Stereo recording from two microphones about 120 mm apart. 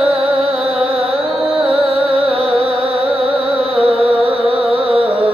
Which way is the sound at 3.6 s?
50° right (ahead or behind).